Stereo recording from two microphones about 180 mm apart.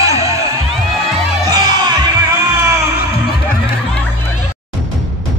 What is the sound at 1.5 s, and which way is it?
Music, 20° right (ahead or behind).